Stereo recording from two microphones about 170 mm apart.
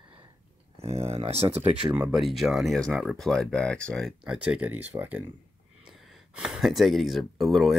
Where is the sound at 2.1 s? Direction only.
Centre (ahead or behind).